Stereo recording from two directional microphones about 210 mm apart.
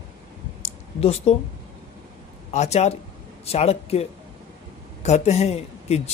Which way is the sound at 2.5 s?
30° left (ahead or behind).